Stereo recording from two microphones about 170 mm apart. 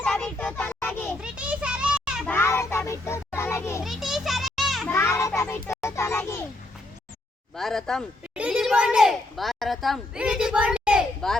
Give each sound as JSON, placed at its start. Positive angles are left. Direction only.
{"t": 0.0, "sound": "children playing", "side_deg": 5}
{"t": 1.2, "sound": "children playing", "side_deg": -5}
{"t": 2.2, "sound": "music", "side_deg": 15}
{"t": 3.8, "sound": "children playing", "side_deg": 0}
{"t": 4.9, "sound": "a sound", "side_deg": 15}
{"t": 7.5, "sound": "a child's voice", "side_deg": 0}